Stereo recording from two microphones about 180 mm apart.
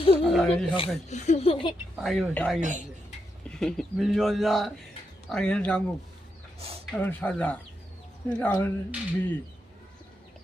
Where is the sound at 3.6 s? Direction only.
Centre (ahead or behind).